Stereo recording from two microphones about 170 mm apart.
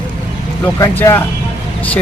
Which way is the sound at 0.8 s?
15° left (ahead or behind).